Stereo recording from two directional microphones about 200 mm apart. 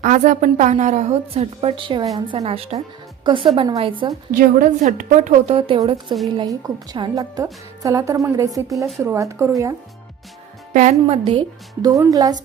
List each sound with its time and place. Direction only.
0.0 s a woman's voice: 40° right (ahead or behind)
4.3 s a woman's voice: 45° right (ahead or behind); by 9.5 s 15° right (ahead or behind)
11.0 s a woman's voice: 30° right (ahead or behind)
11.8 s a woman's voice: 20° right (ahead or behind)